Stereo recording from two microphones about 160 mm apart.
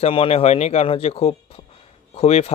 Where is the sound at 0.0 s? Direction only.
35° left (ahead or behind).